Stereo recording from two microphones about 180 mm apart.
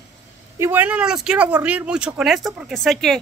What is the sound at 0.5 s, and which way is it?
Speech, 10° right (ahead or behind).